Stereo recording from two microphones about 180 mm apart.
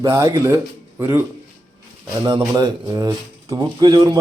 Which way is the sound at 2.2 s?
20° right (ahead or behind).